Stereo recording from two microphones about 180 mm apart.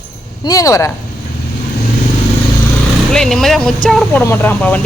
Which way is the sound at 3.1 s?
5° left (ahead or behind).